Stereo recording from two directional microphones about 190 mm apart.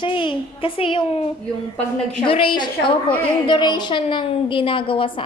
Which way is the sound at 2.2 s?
25° left (ahead or behind).